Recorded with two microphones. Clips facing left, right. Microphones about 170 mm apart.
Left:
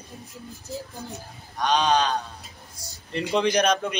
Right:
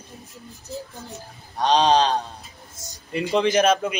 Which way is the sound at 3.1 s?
Centre (ahead or behind).